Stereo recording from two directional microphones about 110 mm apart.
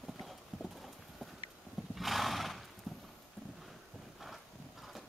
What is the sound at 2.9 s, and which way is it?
Clip-clop, centre (ahead or behind).